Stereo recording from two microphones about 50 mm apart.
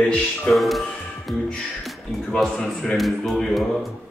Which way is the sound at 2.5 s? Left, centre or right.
Centre.